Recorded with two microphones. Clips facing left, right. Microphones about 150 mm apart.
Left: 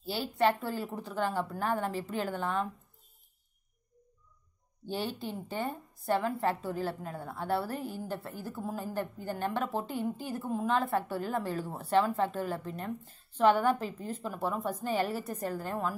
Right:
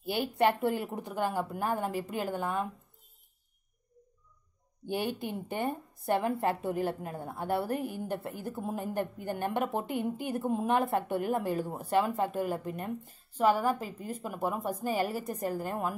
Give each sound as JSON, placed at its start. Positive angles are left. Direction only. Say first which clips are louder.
{"t": 0.4, "sound": "a woman's voice", "louder": "right 1 dB", "side_deg": -20}
{"t": 4.8, "sound": "a woman's voice", "louder": "right 2 dB", "side_deg": -15}
{"t": 10.1, "sound": "a woman's voice", "louder": "right 4 dB", "side_deg": -60}
{"t": 10.4, "sound": "a woman's voice", "louder": "right 2 dB", "side_deg": -20}